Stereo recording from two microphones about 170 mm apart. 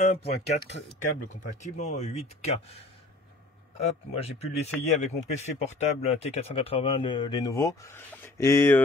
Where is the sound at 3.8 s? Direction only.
35° left (ahead or behind); by 8.8 s 15° left (ahead or behind).